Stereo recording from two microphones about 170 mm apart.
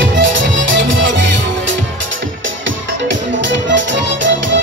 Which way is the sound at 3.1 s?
90° right.